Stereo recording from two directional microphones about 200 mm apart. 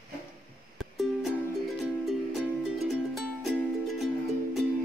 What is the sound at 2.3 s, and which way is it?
Music, centre (ahead or behind).